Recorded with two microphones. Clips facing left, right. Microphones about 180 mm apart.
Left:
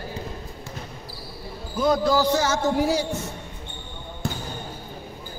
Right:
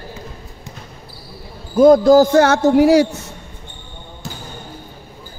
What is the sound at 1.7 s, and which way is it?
A man's voice, 50° right (ahead or behind).